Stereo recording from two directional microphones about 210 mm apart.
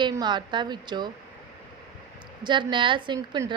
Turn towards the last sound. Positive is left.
turn(degrees=-20)  # may be behind; listen again after turning